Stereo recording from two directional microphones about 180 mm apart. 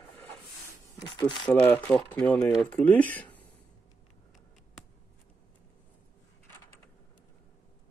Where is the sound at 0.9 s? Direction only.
25° left (ahead or behind).